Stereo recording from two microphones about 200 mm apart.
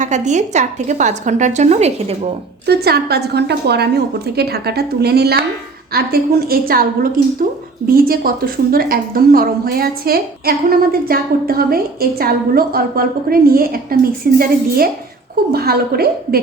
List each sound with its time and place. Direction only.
0.0 s a woman's voice: 35° right (ahead or behind)
2.6 s a woman's voice: 50° right (ahead or behind)